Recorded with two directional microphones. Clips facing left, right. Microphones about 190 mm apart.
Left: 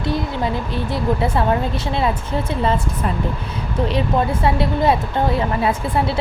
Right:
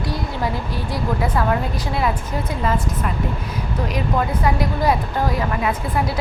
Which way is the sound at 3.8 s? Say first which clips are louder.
Left 4 dB; 30° left (ahead or behind).